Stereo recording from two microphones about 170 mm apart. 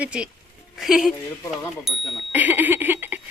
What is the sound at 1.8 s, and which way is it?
Bicycle bell, 5° right (ahead or behind).